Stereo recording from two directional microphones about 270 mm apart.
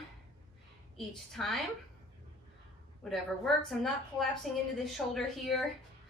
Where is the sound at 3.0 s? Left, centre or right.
Centre.